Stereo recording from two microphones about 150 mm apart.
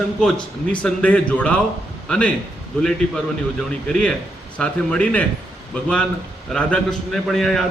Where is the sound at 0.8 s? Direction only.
10° left (ahead or behind).